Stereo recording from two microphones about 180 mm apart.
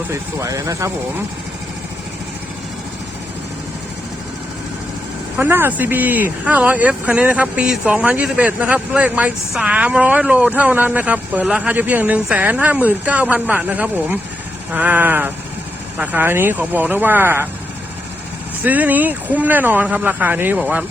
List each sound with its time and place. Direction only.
0.1 s speech: 15° right (ahead or behind)
5.4 s speech: 10° right (ahead or behind)
18.6 s speech: 10° right (ahead or behind)